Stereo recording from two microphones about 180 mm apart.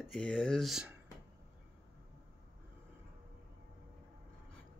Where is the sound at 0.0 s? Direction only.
5° left (ahead or behind).